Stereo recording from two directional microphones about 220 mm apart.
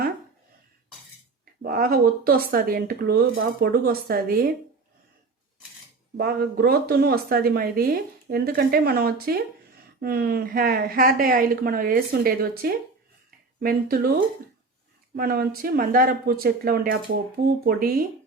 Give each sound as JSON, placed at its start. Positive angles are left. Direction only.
{"t": 1.6, "sound": "speech", "side_deg": -40}
{"t": 6.1, "sound": "speech", "side_deg": -45}